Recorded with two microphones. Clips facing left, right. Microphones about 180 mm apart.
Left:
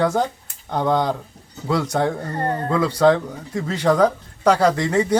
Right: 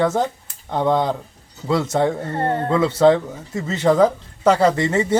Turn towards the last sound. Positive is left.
turn(degrees=-5)  # may be behind; listen again after turning